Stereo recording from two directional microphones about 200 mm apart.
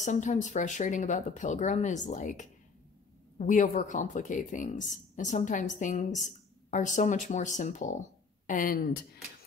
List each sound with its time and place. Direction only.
0.0 s speech: 35° left (ahead or behind)